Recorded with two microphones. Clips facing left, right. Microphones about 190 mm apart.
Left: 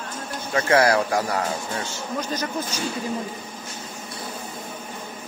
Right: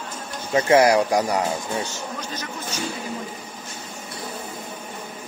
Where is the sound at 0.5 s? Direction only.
20° right (ahead or behind).